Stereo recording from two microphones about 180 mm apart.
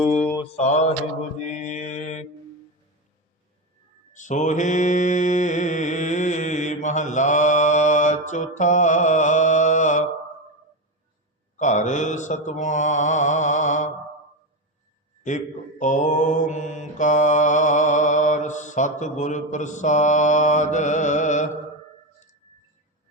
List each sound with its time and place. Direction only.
0.0 s mantra: 5° left (ahead or behind)
0.5 s mantra: 40° left (ahead or behind)
4.1 s mantra: 45° left (ahead or behind)
11.5 s mantra: 40° left (ahead or behind)
15.3 s mantra: 45° left (ahead or behind)